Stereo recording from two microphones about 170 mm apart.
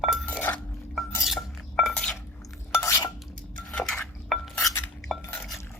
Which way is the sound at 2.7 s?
15° left (ahead or behind).